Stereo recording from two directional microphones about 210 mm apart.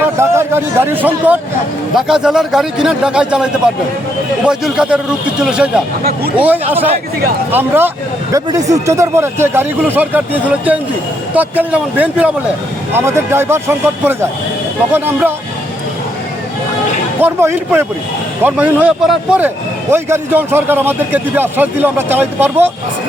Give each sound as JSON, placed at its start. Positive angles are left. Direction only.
{"t": 0.0, "sound": "a man's voice", "side_deg": -10}
{"t": 6.0, "sound": "speech", "side_deg": -45}
{"t": 6.4, "sound": "a man's voice", "side_deg": -10}
{"t": 17.2, "sound": "a man's voice", "side_deg": -10}